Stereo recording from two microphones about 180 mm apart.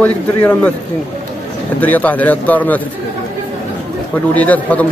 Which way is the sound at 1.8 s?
10° left (ahead or behind).